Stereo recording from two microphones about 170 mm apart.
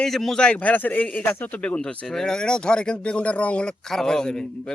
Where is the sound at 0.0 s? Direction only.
Centre (ahead or behind).